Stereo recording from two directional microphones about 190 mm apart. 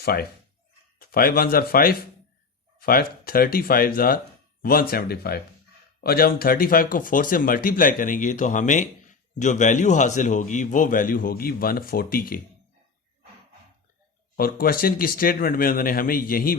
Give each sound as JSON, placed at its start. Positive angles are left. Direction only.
{"t": 0.0, "sound": "speech", "side_deg": 55}
{"t": 14.3, "sound": "speech", "side_deg": 50}